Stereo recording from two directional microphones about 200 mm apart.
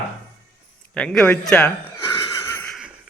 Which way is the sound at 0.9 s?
5° left (ahead or behind).